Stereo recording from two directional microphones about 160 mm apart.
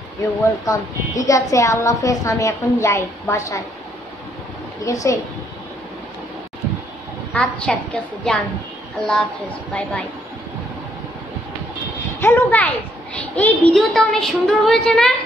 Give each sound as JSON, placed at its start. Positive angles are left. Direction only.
{"t": 0.7, "sound": "a woman's voice", "side_deg": 20}
{"t": 4.8, "sound": "a woman's voice", "side_deg": 20}
{"t": 7.3, "sound": "a child's voice", "side_deg": 5}
{"t": 12.2, "sound": "a child's voice", "side_deg": 15}